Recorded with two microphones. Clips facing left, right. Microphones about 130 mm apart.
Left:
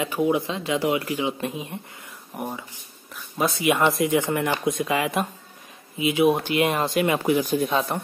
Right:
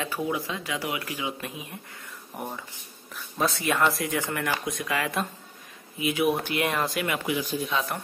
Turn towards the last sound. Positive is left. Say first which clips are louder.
# left 6 dB
turn(degrees=45)  # may be behind; listen again after turning